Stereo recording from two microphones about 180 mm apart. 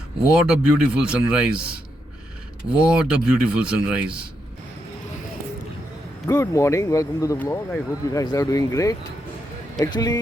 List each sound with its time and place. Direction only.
0.3 s speech: 5° right (ahead or behind)
6.2 s speech: 15° left (ahead or behind)